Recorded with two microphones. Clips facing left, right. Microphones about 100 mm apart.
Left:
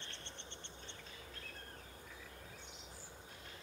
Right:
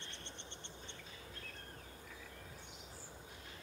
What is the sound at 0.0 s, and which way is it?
Bird, 15° right (ahead or behind).